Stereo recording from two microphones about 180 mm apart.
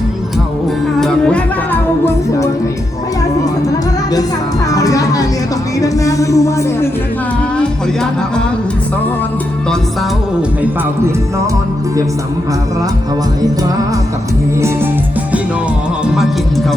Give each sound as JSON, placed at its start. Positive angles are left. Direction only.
{"t": 0.9, "sound": "music", "side_deg": 5}
{"t": 4.7, "sound": "music", "side_deg": 20}